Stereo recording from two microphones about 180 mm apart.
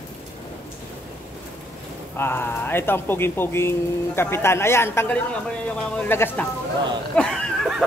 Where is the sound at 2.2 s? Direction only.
15° left (ahead or behind).